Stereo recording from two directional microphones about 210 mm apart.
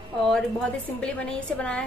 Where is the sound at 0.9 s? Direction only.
5° left (ahead or behind).